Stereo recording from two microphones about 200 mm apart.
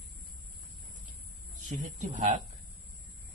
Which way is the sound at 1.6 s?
35° right (ahead or behind).